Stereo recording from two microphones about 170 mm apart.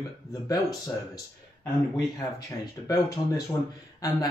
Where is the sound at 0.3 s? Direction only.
20° left (ahead or behind).